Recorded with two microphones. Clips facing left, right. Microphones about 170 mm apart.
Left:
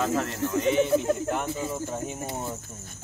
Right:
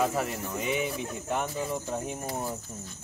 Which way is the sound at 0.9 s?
80° left.